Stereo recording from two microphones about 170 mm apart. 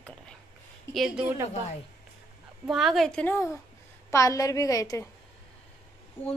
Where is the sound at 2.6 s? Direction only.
Centre (ahead or behind); by 5.0 s 20° left (ahead or behind).